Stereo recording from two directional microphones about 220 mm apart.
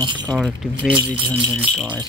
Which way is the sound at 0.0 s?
20° right (ahead or behind).